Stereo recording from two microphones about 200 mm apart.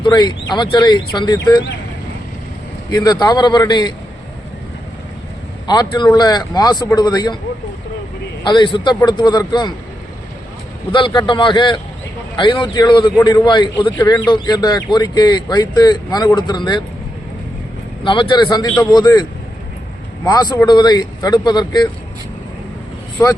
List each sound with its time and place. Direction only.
0.0 s a man's voice: 20° left (ahead or behind)
2.9 s a man's voice: 20° left (ahead or behind)
5.6 s a man's voice: 20° left (ahead or behind)
8.4 s a man's voice: 25° left (ahead or behind)
10.9 s a man's voice: 25° left (ahead or behind)
18.0 s a man's voice: 25° left (ahead or behind)
20.2 s a man's voice: 20° left (ahead or behind)